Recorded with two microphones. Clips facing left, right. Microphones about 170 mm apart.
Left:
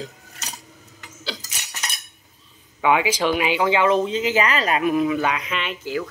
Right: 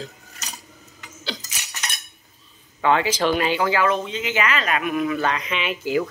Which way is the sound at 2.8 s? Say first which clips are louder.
Even; 10° left (ahead or behind).